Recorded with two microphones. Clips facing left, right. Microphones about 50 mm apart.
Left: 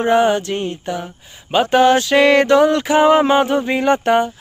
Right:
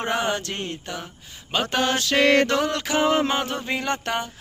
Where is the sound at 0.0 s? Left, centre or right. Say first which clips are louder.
Left 10 dB; centre.